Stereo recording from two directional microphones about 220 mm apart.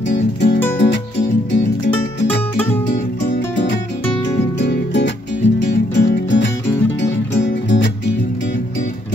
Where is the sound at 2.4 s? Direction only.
10° left (ahead or behind).